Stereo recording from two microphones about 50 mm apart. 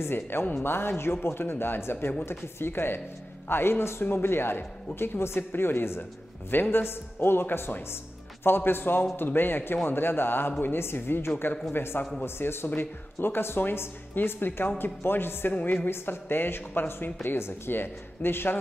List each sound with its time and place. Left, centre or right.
0.0 s speech: left